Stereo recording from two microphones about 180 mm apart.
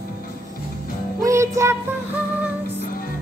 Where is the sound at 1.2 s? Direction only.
15° right (ahead or behind).